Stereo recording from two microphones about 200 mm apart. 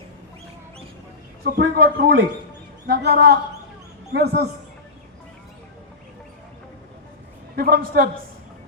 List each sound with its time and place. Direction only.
1.5 s a man's voice: 50° right (ahead or behind)
7.5 s a man's voice: 50° right (ahead or behind)